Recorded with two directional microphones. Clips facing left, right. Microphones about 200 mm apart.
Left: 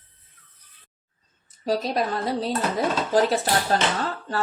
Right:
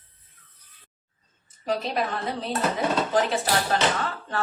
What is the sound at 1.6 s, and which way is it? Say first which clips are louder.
Speech: left 3 dB; 40° left (ahead or behind).